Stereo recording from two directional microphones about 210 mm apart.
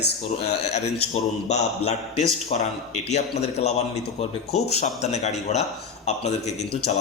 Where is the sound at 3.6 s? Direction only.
30° left (ahead or behind).